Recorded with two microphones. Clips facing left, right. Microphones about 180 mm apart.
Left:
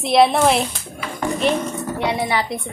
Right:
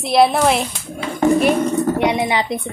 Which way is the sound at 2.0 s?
20° right (ahead or behind).